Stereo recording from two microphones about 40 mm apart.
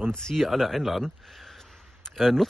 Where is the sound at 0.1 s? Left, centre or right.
Centre.